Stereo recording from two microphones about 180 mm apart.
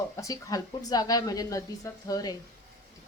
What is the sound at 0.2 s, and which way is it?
A woman's voice, 20° left (ahead or behind).